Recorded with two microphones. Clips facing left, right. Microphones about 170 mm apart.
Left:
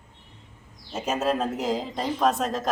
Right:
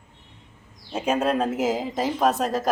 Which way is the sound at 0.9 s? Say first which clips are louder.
Right 3 dB; centre (ahead or behind).